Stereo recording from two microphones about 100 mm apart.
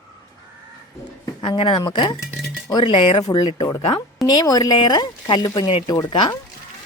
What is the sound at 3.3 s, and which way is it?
A woman's voice, 50° left (ahead or behind).